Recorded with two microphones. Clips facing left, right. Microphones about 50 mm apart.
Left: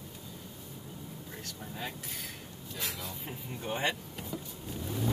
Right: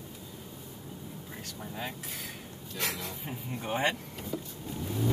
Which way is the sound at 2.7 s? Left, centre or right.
Right.